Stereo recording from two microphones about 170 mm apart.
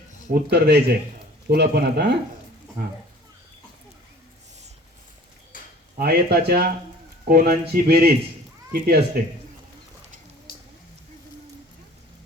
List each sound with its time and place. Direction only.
0.5 s speech: 70° right (ahead or behind)
6.0 s speech: 65° right (ahead or behind)